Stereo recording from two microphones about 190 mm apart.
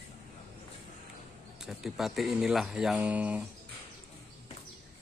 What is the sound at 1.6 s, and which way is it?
Speech, centre (ahead or behind).